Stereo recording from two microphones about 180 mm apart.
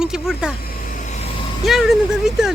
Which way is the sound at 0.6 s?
55° left (ahead or behind).